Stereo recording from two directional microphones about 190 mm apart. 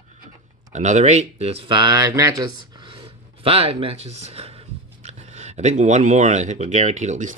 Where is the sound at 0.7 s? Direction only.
40° right (ahead or behind).